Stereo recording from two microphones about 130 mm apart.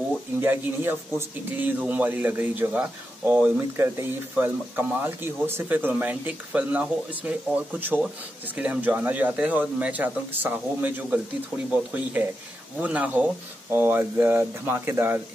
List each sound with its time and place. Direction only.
0.4 s speech: 15° right (ahead or behind)